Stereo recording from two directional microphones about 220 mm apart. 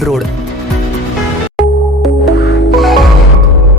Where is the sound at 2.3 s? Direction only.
50° left (ahead or behind).